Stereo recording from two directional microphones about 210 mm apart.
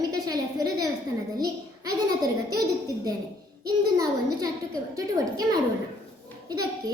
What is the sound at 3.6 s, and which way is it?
Speech, 20° right (ahead or behind).